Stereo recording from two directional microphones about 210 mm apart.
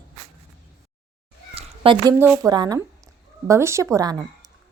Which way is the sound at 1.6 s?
25° right (ahead or behind).